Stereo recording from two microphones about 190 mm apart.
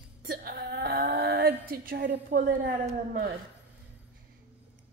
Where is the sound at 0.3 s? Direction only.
55° right (ahead or behind).